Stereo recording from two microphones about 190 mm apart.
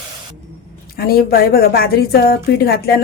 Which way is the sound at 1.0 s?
50° left (ahead or behind).